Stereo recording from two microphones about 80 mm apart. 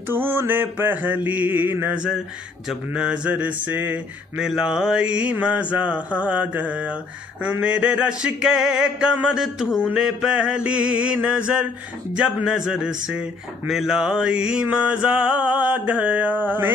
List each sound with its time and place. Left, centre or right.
0.1 s mantra: right
4.4 s mantra: centre; by 16.7 s right